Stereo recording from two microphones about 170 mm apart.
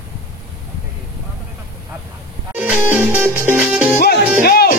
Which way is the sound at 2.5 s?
10° right (ahead or behind).